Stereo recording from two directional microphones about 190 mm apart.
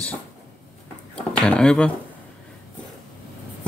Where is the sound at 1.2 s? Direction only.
5° left (ahead or behind).